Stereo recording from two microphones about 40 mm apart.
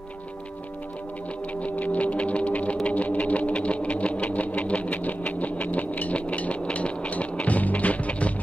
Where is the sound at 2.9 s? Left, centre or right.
Left.